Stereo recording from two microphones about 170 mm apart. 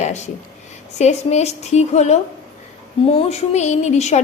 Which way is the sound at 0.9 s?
40° left (ahead or behind).